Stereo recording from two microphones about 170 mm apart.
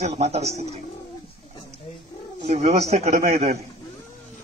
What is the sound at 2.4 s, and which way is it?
Speech, 40° right (ahead or behind).